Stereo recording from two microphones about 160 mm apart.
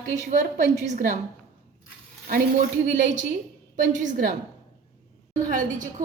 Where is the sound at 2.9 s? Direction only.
55° right (ahead or behind).